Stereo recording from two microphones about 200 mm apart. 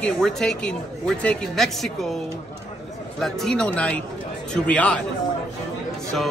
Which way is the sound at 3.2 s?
Centre (ahead or behind).